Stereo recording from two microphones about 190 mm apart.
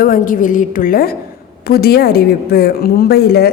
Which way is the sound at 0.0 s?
45° left (ahead or behind).